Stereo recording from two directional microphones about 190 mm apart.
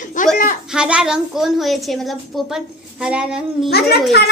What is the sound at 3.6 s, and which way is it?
Speech, 55° left (ahead or behind).